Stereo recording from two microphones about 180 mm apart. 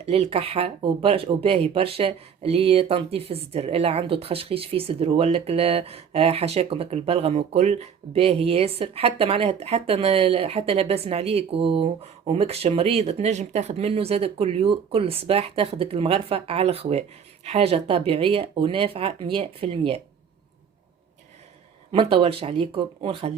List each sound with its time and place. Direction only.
0.0 s speech: 35° right (ahead or behind)
21.9 s speech: 30° right (ahead or behind)